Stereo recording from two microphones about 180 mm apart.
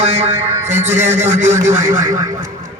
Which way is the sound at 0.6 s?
40° right (ahead or behind).